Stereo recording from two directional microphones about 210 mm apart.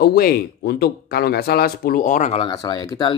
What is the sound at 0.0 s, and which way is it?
Speech, 45° left (ahead or behind).